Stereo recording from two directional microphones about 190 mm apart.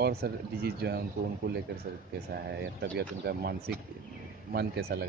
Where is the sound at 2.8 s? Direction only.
60° right (ahead or behind).